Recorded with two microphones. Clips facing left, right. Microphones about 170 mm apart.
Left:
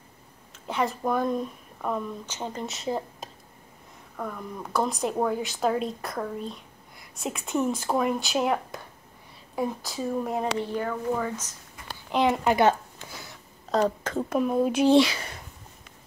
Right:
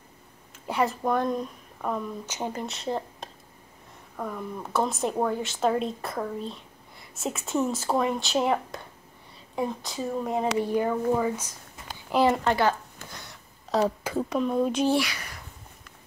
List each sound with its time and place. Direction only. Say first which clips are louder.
0.7 s speech: right 1 dB; 10° right (ahead or behind)
1.0 s speech: even; centre (ahead or behind)
2.2 s speech: right 2 dB; 10° right (ahead or behind)
2.6 s a woman's voice: even; centre (ahead or behind)
10.6 s a woman's voice: right 4 dB; 15° right (ahead or behind)
12.4 s speech: left 3 dB; 20° left (ahead or behind)
13.1 s a sound: left 1 dB; centre (ahead or behind)
14.3 s speech: left 2 dB; 5° left (ahead or behind)
14.9 s speech: left 6 dB; 25° left (ahead or behind)